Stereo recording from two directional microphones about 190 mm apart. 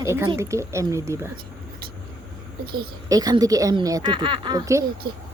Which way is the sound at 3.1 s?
20° right (ahead or behind).